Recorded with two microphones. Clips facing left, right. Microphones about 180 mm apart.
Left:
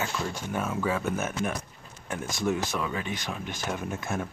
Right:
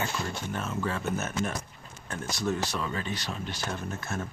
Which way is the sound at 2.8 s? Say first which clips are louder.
Left 1 dB; 10° left (ahead or behind).